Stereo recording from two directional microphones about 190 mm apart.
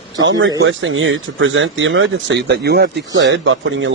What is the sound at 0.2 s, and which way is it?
Speech, 85° right.